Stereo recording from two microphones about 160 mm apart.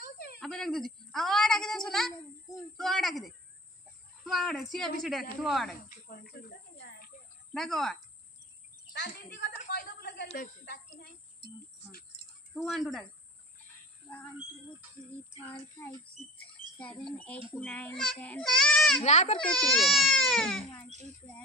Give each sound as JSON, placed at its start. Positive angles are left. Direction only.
{"t": 0.0, "sound": "a sound", "side_deg": 75}
{"t": 0.4, "sound": "a woman's voice", "side_deg": 5}
{"t": 5.9, "sound": "speech", "side_deg": 65}
{"t": 7.5, "sound": "a woman's voice", "side_deg": 0}
{"t": 8.9, "sound": "speech", "side_deg": 90}
{"t": 10.2, "sound": "speech", "side_deg": 55}
{"t": 10.6, "sound": "speech", "side_deg": 90}
{"t": 12.5, "sound": "a woman's voice", "side_deg": 0}
{"t": 14.0, "sound": "speech", "side_deg": 15}
{"t": 16.3, "sound": "a sound", "side_deg": 10}
{"t": 17.5, "sound": "a child's voice", "side_deg": 10}
{"t": 18.9, "sound": "a child's voice", "side_deg": 45}
{"t": 19.4, "sound": "a woman's voice", "side_deg": 5}